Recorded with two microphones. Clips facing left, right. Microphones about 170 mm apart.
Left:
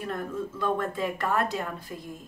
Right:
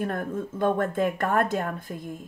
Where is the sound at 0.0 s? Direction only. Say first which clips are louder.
Right 3 dB; 50° right (ahead or behind).